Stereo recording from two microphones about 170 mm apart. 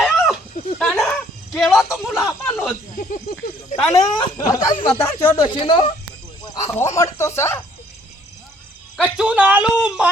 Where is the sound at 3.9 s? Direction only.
20° left (ahead or behind).